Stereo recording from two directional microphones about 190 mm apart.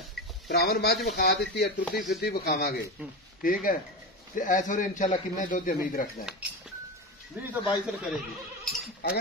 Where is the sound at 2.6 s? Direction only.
55° left (ahead or behind).